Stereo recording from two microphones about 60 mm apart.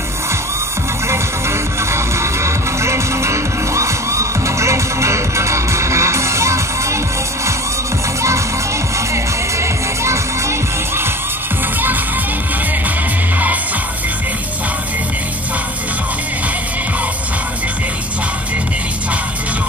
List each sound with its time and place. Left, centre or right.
1.0 s music: right
8.9 s music: right